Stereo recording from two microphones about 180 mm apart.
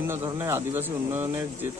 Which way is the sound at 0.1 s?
15° right (ahead or behind).